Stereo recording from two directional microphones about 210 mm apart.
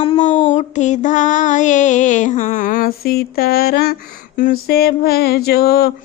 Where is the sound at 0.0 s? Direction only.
30° left (ahead or behind).